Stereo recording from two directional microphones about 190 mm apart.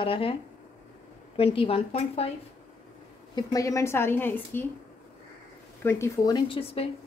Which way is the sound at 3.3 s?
15° left (ahead or behind).